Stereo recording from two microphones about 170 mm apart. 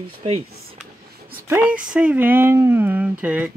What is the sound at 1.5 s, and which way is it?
Speech, 10° right (ahead or behind).